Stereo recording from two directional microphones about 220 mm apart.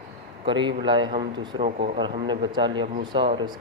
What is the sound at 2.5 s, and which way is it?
Speech, 20° right (ahead or behind).